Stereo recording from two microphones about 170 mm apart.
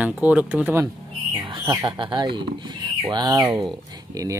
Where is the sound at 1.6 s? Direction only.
25° right (ahead or behind).